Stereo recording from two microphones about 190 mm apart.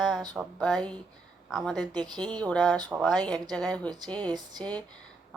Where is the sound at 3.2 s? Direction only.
20° right (ahead or behind).